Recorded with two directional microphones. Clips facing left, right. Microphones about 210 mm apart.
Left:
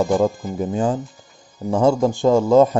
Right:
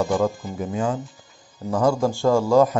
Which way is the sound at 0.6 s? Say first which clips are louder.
Left 4 dB; 30° left (ahead or behind).